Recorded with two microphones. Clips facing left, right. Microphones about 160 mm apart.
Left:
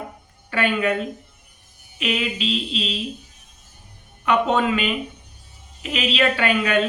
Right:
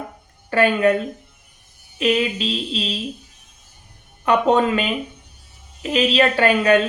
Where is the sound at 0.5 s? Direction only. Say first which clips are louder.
Right 5 dB; 40° right (ahead or behind).